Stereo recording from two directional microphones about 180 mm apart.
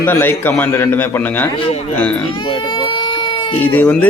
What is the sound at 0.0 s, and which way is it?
A man's voice, 10° left (ahead or behind).